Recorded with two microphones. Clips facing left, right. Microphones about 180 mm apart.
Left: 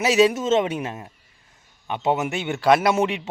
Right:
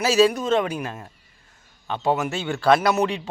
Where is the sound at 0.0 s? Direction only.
20° left (ahead or behind).